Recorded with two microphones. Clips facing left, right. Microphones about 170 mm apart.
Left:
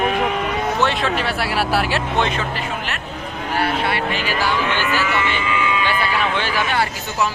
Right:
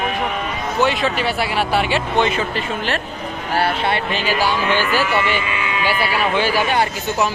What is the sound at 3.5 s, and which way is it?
Speech, 25° right (ahead or behind).